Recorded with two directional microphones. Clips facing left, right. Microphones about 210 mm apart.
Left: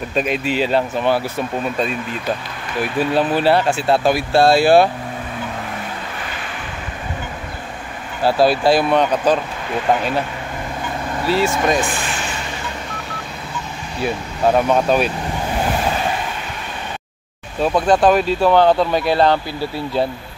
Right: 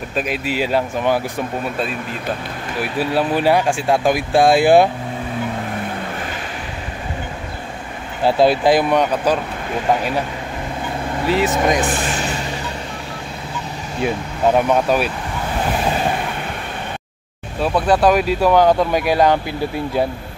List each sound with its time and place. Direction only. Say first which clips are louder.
0.1 s speech: left 2 dB; 5° right (ahead or behind)
2.8 s speech: left 2 dB; 10° right (ahead or behind)
8.2 s speech: right 1 dB; 20° right (ahead or behind)
11.2 s speech: even; 15° right (ahead or behind)
14.7 s speech: left 1 dB; 10° right (ahead or behind)
17.6 s speech: left 1 dB; 5° right (ahead or behind)